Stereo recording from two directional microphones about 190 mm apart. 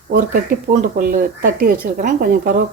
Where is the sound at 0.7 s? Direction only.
45° right (ahead or behind).